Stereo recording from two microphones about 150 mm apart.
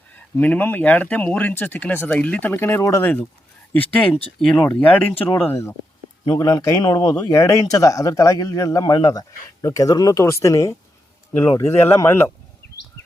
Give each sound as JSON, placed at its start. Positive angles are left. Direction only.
{"t": 0.3, "sound": "speech", "side_deg": 10}